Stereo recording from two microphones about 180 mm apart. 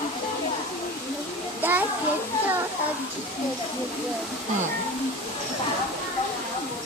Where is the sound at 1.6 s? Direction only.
10° right (ahead or behind).